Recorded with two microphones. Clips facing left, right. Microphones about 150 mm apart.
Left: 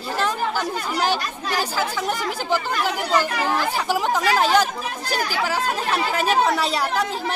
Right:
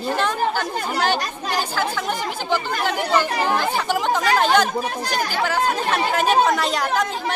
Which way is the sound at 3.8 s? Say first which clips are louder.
Right 1 dB; 5° left (ahead or behind).